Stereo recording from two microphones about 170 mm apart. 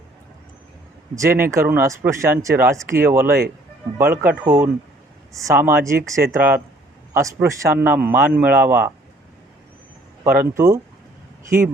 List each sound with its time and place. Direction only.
1.1 s speech: 15° right (ahead or behind)
10.2 s speech: 10° right (ahead or behind)